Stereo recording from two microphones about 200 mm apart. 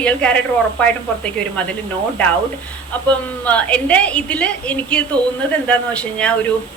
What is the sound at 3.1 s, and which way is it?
A woman's voice, 5° left (ahead or behind).